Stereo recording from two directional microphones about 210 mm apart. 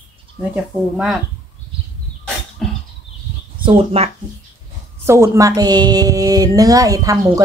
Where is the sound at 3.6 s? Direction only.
30° right (ahead or behind).